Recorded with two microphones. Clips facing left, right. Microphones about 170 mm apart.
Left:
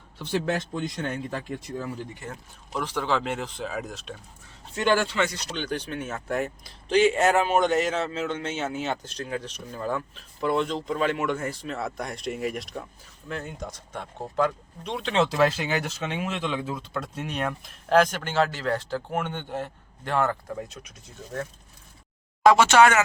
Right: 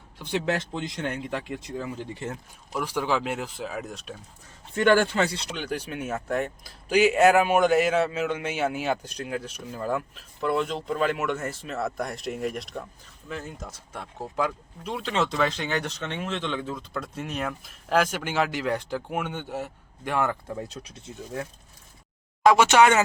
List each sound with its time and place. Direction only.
0.2 s speech: 15° right (ahead or behind)
2.7 s speech: 10° right (ahead or behind)
4.7 s a man's voice: 50° right (ahead or behind)
5.5 s speech: 5° right (ahead or behind)
22.4 s speech: 15° right (ahead or behind)